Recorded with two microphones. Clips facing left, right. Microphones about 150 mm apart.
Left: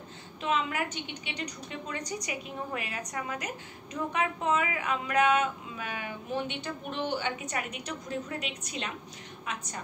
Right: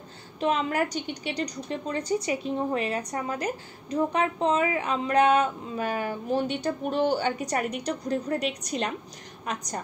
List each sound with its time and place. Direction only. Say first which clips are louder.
0.4 s a woman's voice: right 5 dB; 40° right (ahead or behind)